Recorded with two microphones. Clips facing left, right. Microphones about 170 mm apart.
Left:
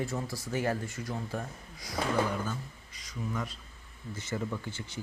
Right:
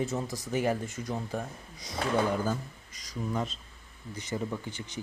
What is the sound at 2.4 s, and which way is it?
A man's voice, 40° right (ahead or behind).